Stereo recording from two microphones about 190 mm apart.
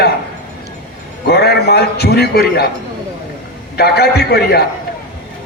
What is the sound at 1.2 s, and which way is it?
A man's voice, 55° left (ahead or behind).